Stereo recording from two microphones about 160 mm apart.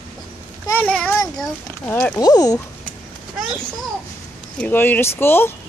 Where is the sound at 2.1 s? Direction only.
25° left (ahead or behind).